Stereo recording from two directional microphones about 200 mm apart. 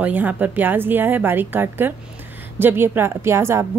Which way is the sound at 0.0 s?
10° right (ahead or behind).